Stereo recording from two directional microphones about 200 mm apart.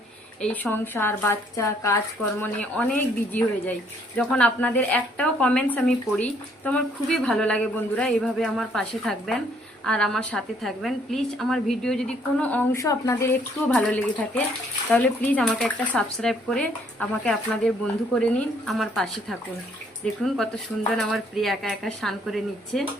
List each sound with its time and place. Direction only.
0.4 s speech: 10° left (ahead or behind)